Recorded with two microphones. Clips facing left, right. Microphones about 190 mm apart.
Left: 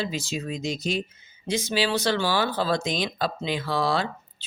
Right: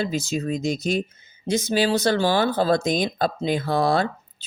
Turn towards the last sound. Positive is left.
turn(degrees=-50)  # may be behind; listen again after turning